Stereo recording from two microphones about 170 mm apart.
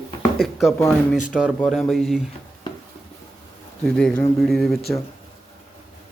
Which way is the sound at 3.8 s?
5° left (ahead or behind).